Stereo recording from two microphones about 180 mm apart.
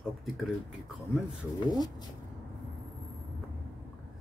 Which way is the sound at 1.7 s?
20° left (ahead or behind).